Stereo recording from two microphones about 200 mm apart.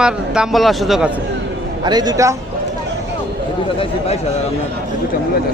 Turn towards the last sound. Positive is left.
turn(degrees=30)  # may be behind; listen again after turning